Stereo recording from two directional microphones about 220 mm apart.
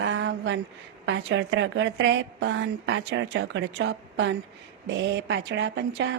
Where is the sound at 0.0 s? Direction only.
55° right (ahead or behind).